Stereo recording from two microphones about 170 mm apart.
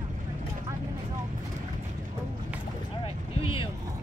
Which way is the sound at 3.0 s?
35° left (ahead or behind).